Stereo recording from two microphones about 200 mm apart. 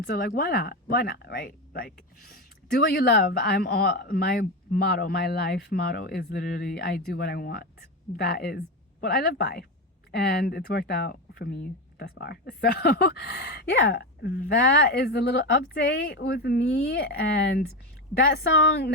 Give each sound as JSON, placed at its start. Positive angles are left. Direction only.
{"t": 0.0, "sound": "speech", "side_deg": 50}